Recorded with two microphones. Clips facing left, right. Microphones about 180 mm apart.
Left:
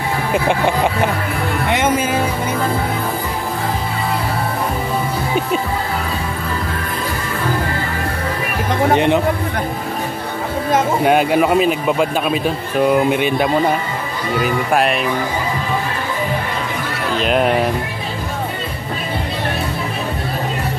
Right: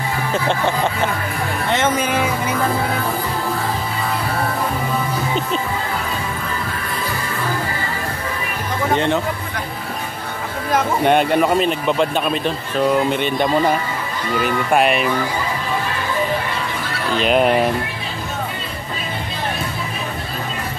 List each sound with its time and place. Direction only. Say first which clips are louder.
0.3 s speech: left 3 dB; 10° left (ahead or behind)
1.7 s music: left 1 dB; 10° left (ahead or behind)
8.9 s speech: left 3 dB; 15° left (ahead or behind)
11.1 s speech: even; 5° left (ahead or behind)
17.2 s speech: right 1 dB; centre (ahead or behind)